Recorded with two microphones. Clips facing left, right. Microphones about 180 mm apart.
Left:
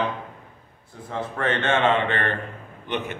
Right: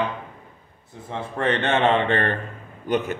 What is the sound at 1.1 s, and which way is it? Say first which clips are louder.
Speech: right 2 dB; 30° right (ahead or behind).